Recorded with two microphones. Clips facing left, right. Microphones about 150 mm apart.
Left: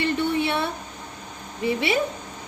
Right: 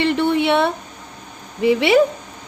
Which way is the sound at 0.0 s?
75° right (ahead or behind).